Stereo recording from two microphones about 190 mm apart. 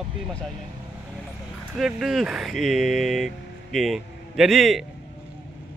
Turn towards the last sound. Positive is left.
turn(degrees=0)  # may be behind; listen again after turning